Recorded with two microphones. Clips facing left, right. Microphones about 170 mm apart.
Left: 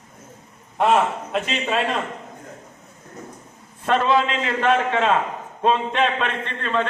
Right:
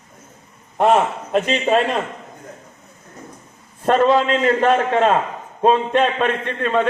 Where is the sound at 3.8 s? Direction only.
45° right (ahead or behind).